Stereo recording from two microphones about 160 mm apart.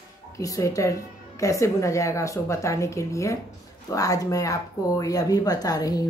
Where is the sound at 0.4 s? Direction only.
20° left (ahead or behind).